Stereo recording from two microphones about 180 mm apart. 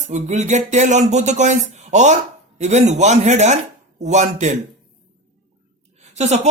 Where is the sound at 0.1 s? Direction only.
40° right (ahead or behind).